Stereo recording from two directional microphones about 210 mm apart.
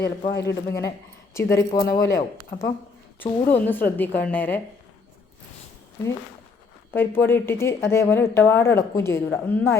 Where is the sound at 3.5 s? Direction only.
10° left (ahead or behind).